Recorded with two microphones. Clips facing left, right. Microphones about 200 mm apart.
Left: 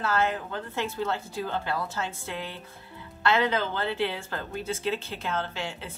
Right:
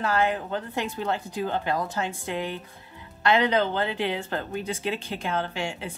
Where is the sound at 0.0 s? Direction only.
15° right (ahead or behind).